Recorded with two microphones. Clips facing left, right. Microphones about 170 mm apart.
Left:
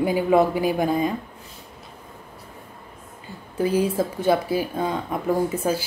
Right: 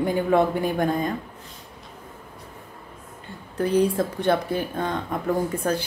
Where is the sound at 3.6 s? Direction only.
5° left (ahead or behind).